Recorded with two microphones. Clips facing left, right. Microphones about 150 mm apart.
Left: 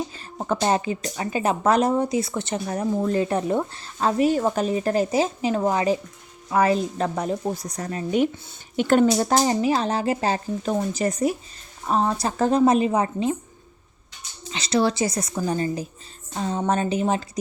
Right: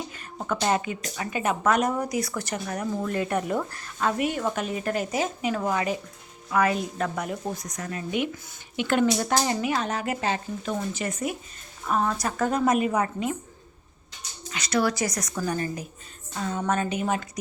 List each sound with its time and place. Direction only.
0.1 s speech: 30° left (ahead or behind)
11.9 s a woman's voice: 25° left (ahead or behind)
14.5 s a woman's voice: 30° left (ahead or behind)